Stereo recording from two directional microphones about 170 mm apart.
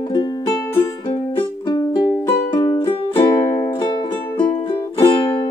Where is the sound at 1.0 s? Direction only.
25° left (ahead or behind).